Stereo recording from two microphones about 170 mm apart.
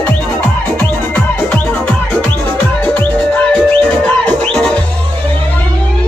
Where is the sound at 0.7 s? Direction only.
5° left (ahead or behind).